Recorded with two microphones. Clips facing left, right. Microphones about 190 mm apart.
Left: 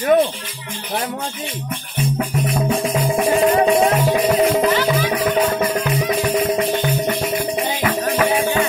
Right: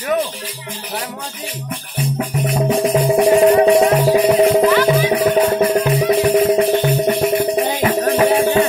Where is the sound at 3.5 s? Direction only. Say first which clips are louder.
Right 3 dB; 35° right (ahead or behind).